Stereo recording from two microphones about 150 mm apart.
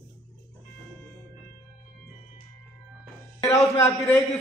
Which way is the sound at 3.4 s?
20° left (ahead or behind).